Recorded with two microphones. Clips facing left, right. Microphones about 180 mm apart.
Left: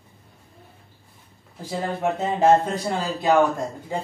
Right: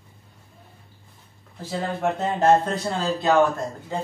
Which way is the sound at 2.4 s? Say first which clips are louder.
Left 1 dB; 10° left (ahead or behind).